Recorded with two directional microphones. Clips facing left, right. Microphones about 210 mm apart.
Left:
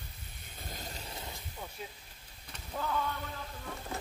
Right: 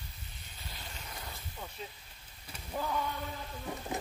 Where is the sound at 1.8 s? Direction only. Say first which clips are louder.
Even; 5° left (ahead or behind).